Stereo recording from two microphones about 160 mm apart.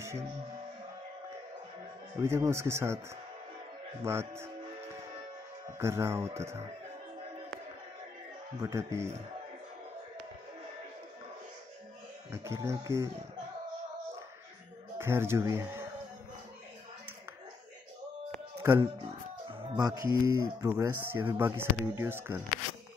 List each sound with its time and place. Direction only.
2.1 s speech: 15° right (ahead or behind)
4.0 s speech: 15° right (ahead or behind)
5.8 s speech: 15° right (ahead or behind)
8.5 s speech: 15° right (ahead or behind)
12.3 s speech: 20° right (ahead or behind)
15.0 s speech: 15° right (ahead or behind)
18.6 s speech: 15° right (ahead or behind)
19.4 s speech: 25° right (ahead or behind)